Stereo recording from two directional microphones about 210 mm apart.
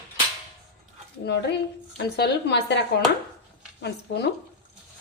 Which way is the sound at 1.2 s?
55° left (ahead or behind).